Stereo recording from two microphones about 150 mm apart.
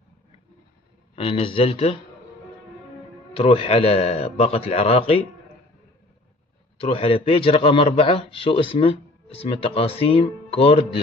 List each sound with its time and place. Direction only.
1.1 s a man's voice: 35° left (ahead or behind)
3.3 s a man's voice: 40° left (ahead or behind)
6.8 s a man's voice: 40° left (ahead or behind)